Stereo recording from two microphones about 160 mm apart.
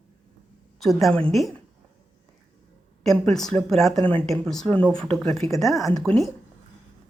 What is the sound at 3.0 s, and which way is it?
Speech, centre (ahead or behind).